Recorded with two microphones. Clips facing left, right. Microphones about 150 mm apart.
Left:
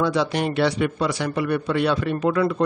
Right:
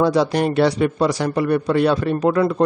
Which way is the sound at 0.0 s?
40° right (ahead or behind).